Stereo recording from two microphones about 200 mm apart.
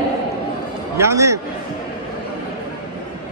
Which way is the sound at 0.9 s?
15° right (ahead or behind).